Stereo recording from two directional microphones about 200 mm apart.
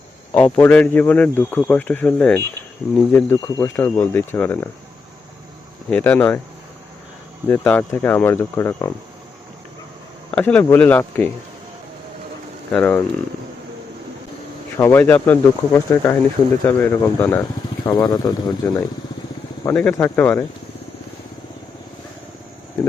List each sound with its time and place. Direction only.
0.3 s speech: 10° left (ahead or behind)
5.9 s speech: 10° left (ahead or behind)
7.4 s speech: 10° left (ahead or behind)
10.3 s speech: 5° left (ahead or behind)
12.7 s speech: 5° left (ahead or behind)
14.8 s speech: 10° left (ahead or behind)
19.6 s speech: 10° left (ahead or behind)